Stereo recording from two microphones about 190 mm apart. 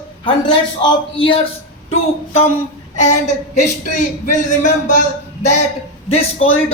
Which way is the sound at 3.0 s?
40° left (ahead or behind).